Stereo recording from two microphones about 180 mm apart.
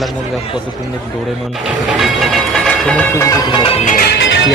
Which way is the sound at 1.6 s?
Centre (ahead or behind).